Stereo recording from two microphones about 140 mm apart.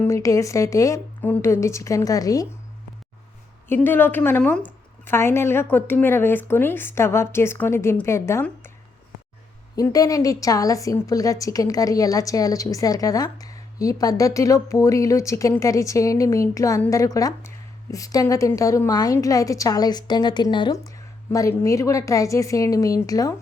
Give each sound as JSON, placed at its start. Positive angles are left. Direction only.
{"t": 0.0, "sound": "a woman's voice", "side_deg": 20}
{"t": 3.7, "sound": "a woman's voice", "side_deg": 15}
{"t": 9.7, "sound": "a woman's voice", "side_deg": 25}